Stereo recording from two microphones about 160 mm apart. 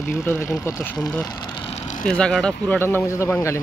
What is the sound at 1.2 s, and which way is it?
Vehicle, 30° left (ahead or behind).